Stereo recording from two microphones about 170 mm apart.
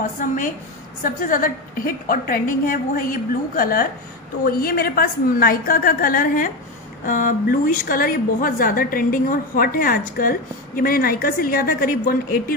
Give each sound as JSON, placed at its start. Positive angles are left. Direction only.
{"t": 1.0, "sound": "a woman's voice", "side_deg": 50}